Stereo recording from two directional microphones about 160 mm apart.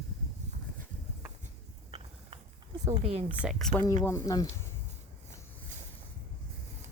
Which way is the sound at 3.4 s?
Centre (ahead or behind).